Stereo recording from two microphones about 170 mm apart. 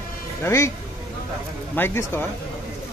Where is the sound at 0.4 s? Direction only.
15° left (ahead or behind).